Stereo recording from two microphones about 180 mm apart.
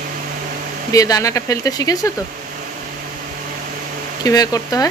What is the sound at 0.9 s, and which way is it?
Speech, 20° left (ahead or behind).